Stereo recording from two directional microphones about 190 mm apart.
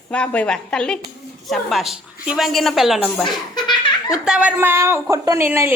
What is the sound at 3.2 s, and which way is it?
Laughter, 25° left (ahead or behind).